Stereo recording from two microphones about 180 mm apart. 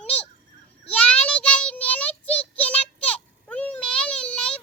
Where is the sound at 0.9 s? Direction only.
5° left (ahead or behind).